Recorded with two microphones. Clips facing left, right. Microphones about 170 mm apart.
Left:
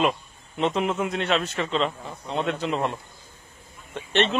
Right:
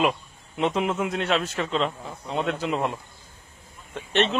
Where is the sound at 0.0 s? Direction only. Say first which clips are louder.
Even; 5° right (ahead or behind).